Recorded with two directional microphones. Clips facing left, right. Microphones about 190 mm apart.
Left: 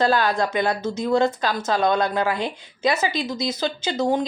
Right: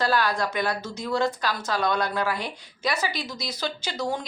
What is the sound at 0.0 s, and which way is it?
Speech, 25° left (ahead or behind).